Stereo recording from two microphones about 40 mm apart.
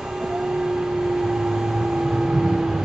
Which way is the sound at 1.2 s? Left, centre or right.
Centre.